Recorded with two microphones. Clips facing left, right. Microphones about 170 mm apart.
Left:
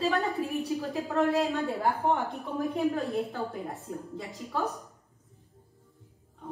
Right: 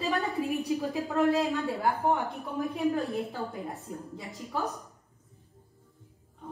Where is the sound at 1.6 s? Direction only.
Centre (ahead or behind).